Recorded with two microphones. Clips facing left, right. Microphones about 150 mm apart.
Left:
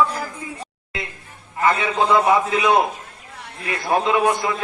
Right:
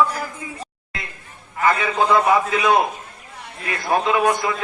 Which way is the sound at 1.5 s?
25° left (ahead or behind).